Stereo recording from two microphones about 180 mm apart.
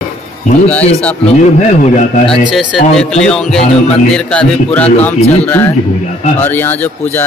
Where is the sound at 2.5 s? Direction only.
5° left (ahead or behind).